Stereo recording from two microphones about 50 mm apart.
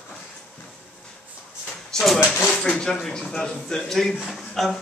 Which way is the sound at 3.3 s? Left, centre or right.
Centre.